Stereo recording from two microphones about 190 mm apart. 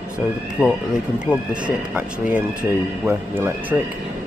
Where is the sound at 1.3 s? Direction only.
5° right (ahead or behind).